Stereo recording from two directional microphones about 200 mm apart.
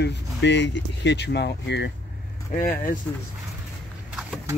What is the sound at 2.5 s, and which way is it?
Speech, 45° left (ahead or behind).